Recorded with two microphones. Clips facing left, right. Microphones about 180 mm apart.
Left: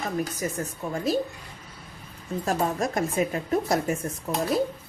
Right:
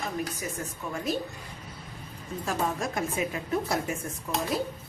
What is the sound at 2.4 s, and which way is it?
A woman's voice, 40° left (ahead or behind).